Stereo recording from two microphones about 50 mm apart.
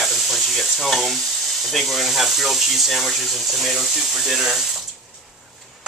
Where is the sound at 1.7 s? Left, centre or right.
Centre.